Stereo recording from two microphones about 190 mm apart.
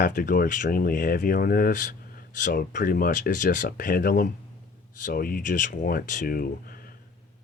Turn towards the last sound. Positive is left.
turn(degrees=50)  # may be behind; listen again after turning